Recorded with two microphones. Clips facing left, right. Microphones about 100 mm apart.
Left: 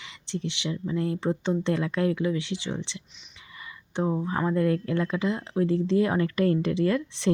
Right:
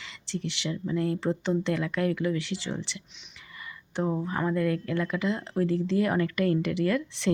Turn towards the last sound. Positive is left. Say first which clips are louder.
# left 2 dB
turn(degrees=25)  # may be behind; listen again after turning